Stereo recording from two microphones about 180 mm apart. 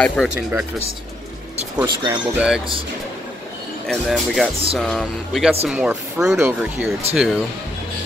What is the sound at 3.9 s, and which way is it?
Speech, centre (ahead or behind).